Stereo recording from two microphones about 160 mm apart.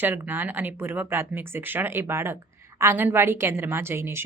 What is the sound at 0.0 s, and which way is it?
Speech, 10° right (ahead or behind).